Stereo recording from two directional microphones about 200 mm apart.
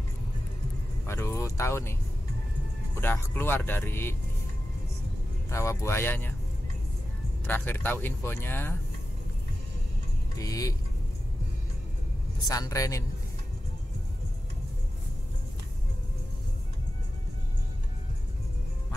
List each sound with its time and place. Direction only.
1.0 s speech: 10° left (ahead or behind)
5.5 s speech: 15° left (ahead or behind)
7.4 s speech: 10° left (ahead or behind)
10.3 s speech: 15° left (ahead or behind)
12.4 s speech: 15° left (ahead or behind)